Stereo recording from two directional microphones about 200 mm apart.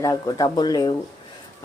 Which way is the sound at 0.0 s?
15° left (ahead or behind).